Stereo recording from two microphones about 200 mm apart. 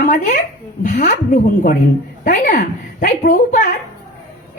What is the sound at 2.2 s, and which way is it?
A woman's voice, 40° left (ahead or behind).